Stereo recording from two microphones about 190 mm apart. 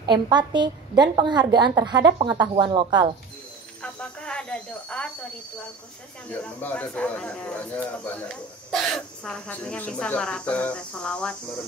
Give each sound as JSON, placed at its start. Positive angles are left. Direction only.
{"t": 0.0, "sound": "a woman's voice", "side_deg": -25}
{"t": 3.8, "sound": "a sound", "side_deg": 5}
{"t": 6.3, "sound": "speech", "side_deg": 10}